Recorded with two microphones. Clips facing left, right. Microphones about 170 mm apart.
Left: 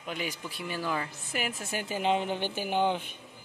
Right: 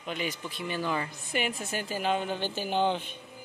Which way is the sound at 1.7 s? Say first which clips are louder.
Left 1 dB; 15° left (ahead or behind).